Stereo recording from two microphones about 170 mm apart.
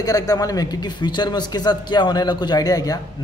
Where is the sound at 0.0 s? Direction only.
20° left (ahead or behind).